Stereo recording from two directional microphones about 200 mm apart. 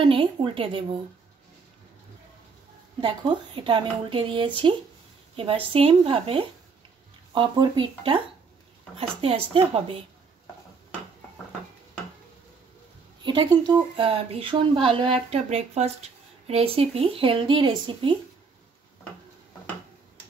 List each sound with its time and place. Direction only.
0.0 s speech: 25° right (ahead or behind)
3.0 s speech: 25° right (ahead or behind)
13.2 s speech: 20° right (ahead or behind)